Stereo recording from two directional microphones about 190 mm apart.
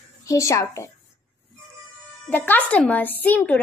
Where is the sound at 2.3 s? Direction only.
10° left (ahead or behind).